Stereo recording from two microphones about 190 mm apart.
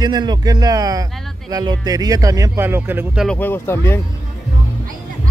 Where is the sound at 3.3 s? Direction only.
10° left (ahead or behind).